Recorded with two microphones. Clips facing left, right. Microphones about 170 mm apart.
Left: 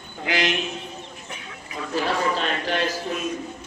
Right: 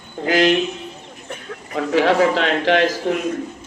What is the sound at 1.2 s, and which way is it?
Chicken, 50° right (ahead or behind).